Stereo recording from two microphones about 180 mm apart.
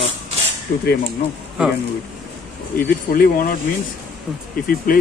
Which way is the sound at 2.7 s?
55° left (ahead or behind).